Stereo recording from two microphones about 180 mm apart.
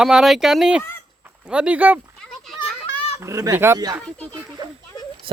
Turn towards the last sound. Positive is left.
turn(degrees=-25)  # may be behind; listen again after turning